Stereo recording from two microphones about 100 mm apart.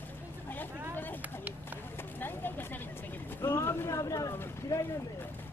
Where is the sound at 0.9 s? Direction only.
20° left (ahead or behind).